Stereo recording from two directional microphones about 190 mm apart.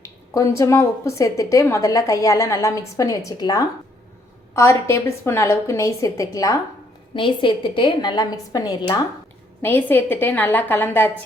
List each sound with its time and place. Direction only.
0.0 s a woman's voice: 15° left (ahead or behind)